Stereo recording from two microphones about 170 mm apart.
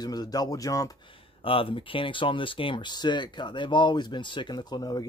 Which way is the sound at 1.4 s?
30° left (ahead or behind).